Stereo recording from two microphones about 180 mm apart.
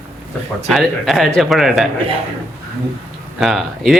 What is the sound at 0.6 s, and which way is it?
Speech, centre (ahead or behind).